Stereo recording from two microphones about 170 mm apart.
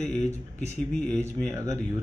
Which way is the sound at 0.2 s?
45° left (ahead or behind).